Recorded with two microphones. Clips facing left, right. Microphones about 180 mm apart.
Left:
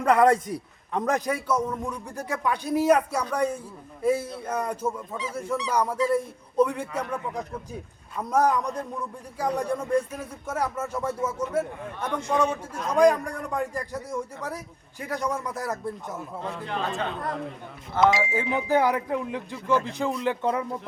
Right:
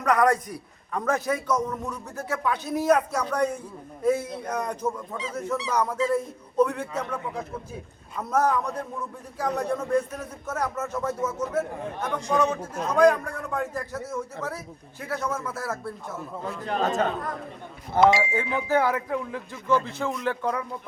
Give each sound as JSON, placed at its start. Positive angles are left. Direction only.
{"t": 0.0, "sound": "a man's voice", "side_deg": 25}
{"t": 16.6, "sound": "a man's voice", "side_deg": -40}
{"t": 18.0, "sound": "speech", "side_deg": 0}
{"t": 18.5, "sound": "a man's voice", "side_deg": 15}